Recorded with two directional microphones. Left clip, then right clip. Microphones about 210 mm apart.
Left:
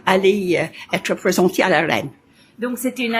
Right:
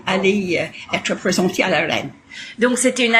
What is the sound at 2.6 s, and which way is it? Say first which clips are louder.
Speech: right 7 dB; 10° right (ahead or behind).